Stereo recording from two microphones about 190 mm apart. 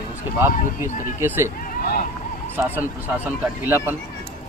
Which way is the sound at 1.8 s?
55° left (ahead or behind).